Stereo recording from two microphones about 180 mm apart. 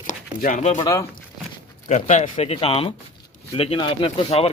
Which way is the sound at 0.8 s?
20° left (ahead or behind).